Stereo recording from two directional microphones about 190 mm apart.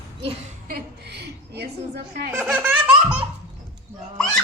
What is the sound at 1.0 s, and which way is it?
Speech, 60° right (ahead or behind).